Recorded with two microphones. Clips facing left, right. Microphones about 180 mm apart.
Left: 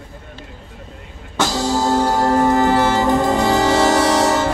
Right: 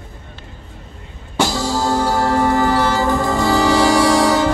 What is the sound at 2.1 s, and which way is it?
Music, 15° left (ahead or behind).